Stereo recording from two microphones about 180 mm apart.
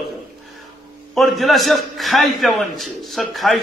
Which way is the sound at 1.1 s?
Centre (ahead or behind).